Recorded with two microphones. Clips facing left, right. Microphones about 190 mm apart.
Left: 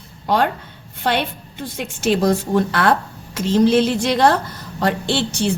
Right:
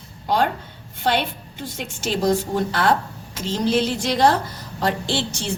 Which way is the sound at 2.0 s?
65° left (ahead or behind).